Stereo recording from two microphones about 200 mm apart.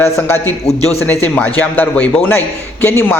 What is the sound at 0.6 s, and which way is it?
Speech, 30° left (ahead or behind).